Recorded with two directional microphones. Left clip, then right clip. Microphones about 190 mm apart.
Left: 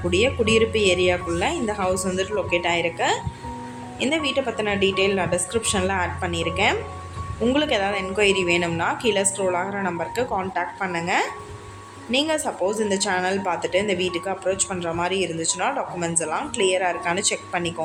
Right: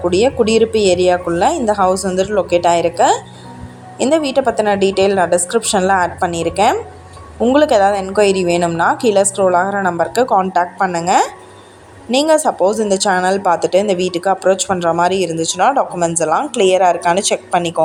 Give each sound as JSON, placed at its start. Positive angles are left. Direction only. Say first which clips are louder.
{"t": 0.1, "sound": "a woman's voice", "louder": "right 6 dB", "side_deg": -30}